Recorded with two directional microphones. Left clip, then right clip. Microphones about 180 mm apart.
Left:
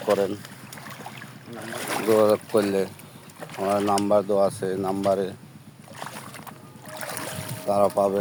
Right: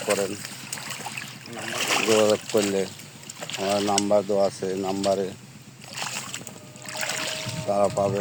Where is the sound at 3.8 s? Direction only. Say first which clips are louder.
Left 1 dB; 10° left (ahead or behind).